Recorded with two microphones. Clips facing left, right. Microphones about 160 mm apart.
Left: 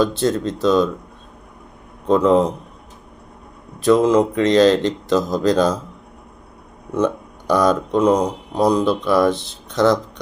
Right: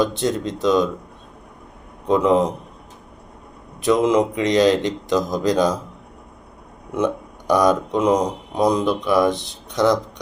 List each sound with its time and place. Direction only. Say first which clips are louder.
0.0 s speech: left 2 dB; 15° right (ahead or behind)
2.0 s speech: left 2 dB; 15° right (ahead or behind)
3.8 s speech: left 3 dB; 20° right (ahead or behind)
6.9 s speech: left 2 dB; 15° right (ahead or behind)